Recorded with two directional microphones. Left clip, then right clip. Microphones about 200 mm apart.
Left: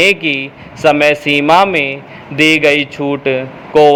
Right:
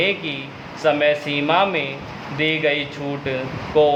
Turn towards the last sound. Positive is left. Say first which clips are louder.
# left 8 dB
turn(degrees=30)  # may be behind; listen again after turning